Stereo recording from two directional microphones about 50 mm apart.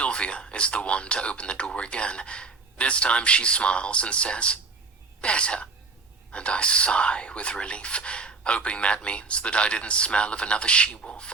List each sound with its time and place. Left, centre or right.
0.0 s speech: left